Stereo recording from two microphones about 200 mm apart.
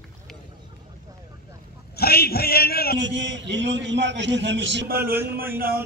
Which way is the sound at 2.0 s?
50° left (ahead or behind).